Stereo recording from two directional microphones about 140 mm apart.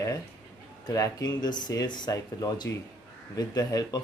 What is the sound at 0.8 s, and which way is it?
Speech, 25° left (ahead or behind).